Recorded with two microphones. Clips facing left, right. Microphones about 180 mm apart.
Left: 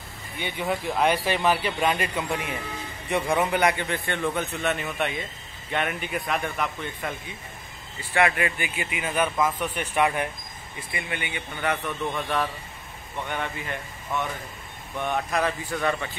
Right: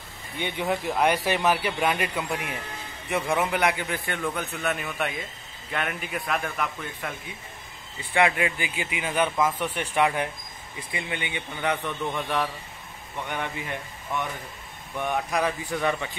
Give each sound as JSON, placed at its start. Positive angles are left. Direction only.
{"t": 0.4, "sound": "a man's voice", "side_deg": -10}
{"t": 8.1, "sound": "a man's voice", "side_deg": -15}
{"t": 15.0, "sound": "a man's voice", "side_deg": -10}